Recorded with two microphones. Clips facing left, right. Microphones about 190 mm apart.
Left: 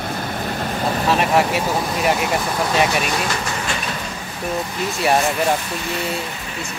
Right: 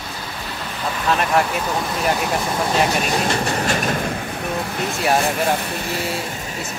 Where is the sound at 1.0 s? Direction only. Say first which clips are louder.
Left 1 dB; 5° left (ahead or behind).